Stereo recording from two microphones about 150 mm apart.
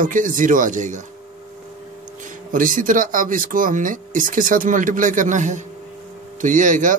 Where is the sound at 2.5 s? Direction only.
65° right (ahead or behind).